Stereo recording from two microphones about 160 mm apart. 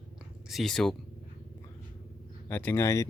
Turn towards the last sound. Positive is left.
turn(degrees=20)  # may be behind; listen again after turning